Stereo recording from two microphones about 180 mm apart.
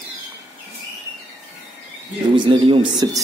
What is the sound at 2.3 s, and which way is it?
Speech, 30° right (ahead or behind).